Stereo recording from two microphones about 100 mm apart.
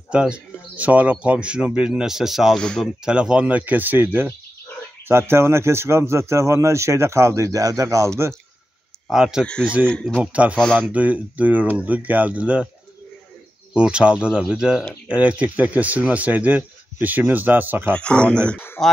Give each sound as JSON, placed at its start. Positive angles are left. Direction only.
{"t": 0.1, "sound": "speech", "side_deg": -10}
{"t": 2.6, "sound": "speech", "side_deg": 10}
{"t": 3.1, "sound": "speech", "side_deg": -10}
{"t": 9.1, "sound": "speech", "side_deg": -5}
{"t": 9.4, "sound": "speech", "side_deg": 10}
{"t": 10.2, "sound": "speech", "side_deg": -10}
{"t": 13.7, "sound": "speech", "side_deg": -10}
{"t": 17.9, "sound": "speech", "side_deg": 10}